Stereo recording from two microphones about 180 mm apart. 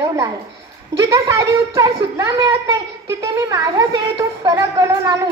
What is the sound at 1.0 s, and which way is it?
Speech, 20° right (ahead or behind).